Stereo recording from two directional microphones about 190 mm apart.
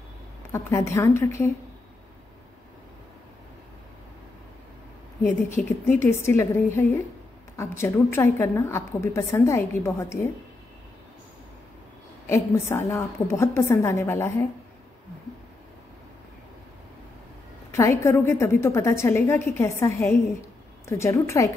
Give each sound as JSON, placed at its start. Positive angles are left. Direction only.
{"t": 0.5, "sound": "a woman's voice", "side_deg": 15}
{"t": 5.2, "sound": "a woman's voice", "side_deg": 10}
{"t": 12.3, "sound": "a woman's voice", "side_deg": 15}
{"t": 17.6, "sound": "a woman's voice", "side_deg": 15}